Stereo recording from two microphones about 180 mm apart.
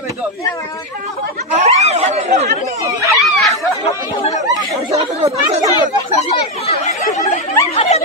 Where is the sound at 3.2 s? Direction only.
Centre (ahead or behind).